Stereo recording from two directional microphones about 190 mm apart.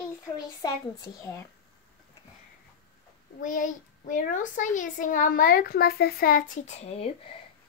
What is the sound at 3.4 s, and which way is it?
A woman's voice, 45° left (ahead or behind).